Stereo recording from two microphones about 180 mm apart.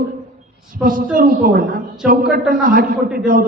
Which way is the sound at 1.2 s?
50° right (ahead or behind).